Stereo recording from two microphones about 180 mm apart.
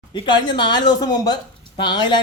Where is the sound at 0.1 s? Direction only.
25° left (ahead or behind).